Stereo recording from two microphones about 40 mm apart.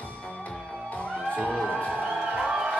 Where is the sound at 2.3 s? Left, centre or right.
Right.